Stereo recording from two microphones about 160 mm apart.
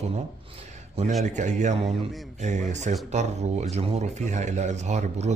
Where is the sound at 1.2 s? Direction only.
50° right (ahead or behind).